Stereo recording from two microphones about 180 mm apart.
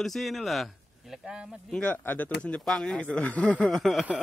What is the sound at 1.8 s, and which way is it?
Speech, 10° left (ahead or behind).